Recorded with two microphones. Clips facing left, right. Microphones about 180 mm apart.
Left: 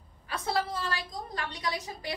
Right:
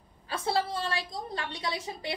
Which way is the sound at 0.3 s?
30° right (ahead or behind).